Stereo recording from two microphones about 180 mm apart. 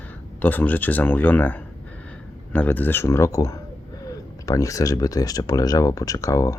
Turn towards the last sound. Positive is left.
turn(degrees=15)  # may be behind; listen again after turning